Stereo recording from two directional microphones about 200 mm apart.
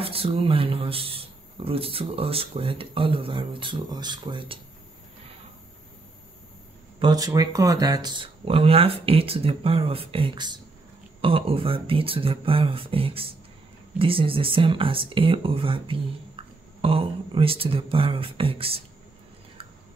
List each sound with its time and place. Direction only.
0.0 s speech: 30° right (ahead or behind)
7.0 s speech: 20° right (ahead or behind)